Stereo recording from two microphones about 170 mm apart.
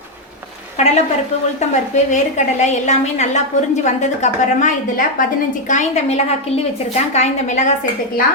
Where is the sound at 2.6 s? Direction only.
40° left (ahead or behind).